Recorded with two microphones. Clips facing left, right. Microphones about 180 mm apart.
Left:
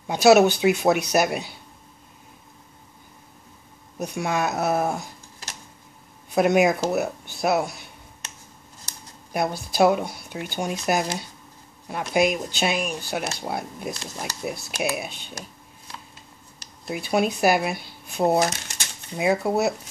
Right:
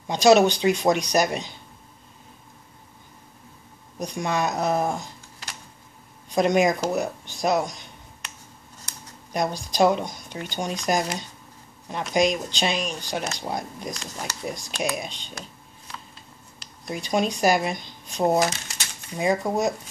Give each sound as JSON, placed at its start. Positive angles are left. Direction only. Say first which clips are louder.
{"t": 0.0, "sound": "speech", "louder": "left 1 dB", "side_deg": 5}
{"t": 4.0, "sound": "speech", "louder": "even", "side_deg": 5}
{"t": 6.3, "sound": "speech", "louder": "left 1 dB", "side_deg": 10}
{"t": 9.3, "sound": "speech", "louder": "left 1 dB", "side_deg": 5}
{"t": 16.8, "sound": "speech", "louder": "left 1 dB", "side_deg": 5}